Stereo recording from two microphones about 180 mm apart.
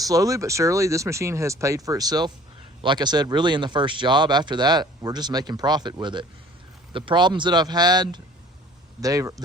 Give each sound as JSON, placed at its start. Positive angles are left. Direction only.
{"t": 0.0, "sound": "speech", "side_deg": -20}